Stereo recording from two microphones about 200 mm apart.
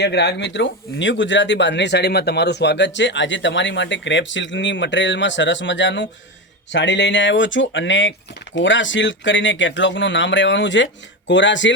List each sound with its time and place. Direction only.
0.0 s speech: 60° left (ahead or behind)